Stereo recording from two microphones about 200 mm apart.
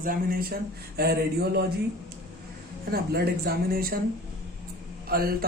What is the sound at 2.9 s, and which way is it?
Speech, 50° right (ahead or behind).